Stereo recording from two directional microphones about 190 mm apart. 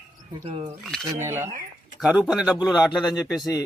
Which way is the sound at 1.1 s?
15° right (ahead or behind).